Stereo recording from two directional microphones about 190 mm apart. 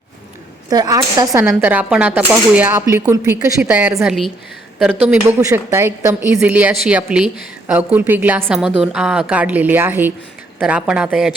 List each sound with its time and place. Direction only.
0.7 s speech: 20° right (ahead or behind)
1.5 s a woman's voice: 5° right (ahead or behind)